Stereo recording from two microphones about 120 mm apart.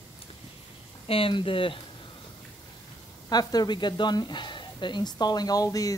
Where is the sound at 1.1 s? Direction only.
45° left (ahead or behind).